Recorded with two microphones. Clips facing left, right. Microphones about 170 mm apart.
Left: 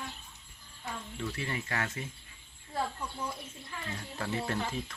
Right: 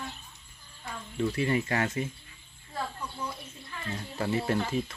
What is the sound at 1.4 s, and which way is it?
Speech, 20° right (ahead or behind).